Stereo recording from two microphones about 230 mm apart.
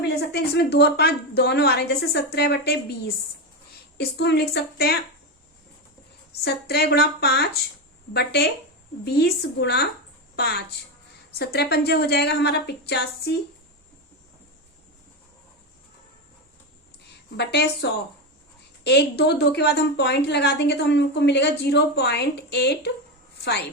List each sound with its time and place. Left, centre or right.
0.3 s a woman's voice: left
3.9 s a woman's voice: left
6.4 s a woman's voice: left
17.3 s a woman's voice: left